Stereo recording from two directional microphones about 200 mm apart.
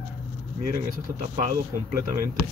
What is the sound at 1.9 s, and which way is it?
Speech, 45° right (ahead or behind).